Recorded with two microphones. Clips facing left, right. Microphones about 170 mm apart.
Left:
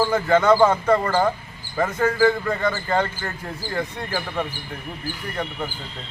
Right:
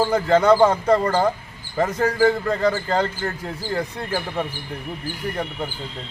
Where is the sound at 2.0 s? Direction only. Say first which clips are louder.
Even; 35° right (ahead or behind).